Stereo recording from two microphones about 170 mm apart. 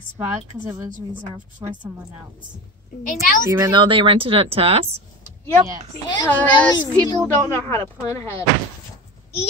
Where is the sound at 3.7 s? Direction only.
30° right (ahead or behind).